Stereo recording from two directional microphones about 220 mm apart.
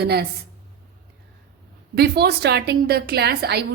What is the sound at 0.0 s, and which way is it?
Speech, 50° right (ahead or behind).